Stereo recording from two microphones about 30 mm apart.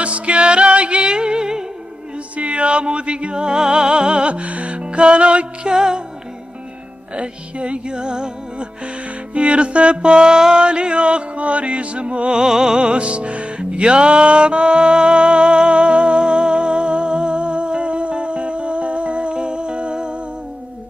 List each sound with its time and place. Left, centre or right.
0.0 s music: right
1.1 s music: right
2.3 s music: right
4.3 s music: right
5.7 s music: right
7.2 s music: right
9.3 s music: right
12.4 s music: centre
12.7 s music: right